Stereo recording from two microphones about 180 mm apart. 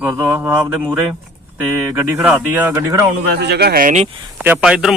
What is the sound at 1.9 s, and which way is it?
Speech, 10° right (ahead or behind).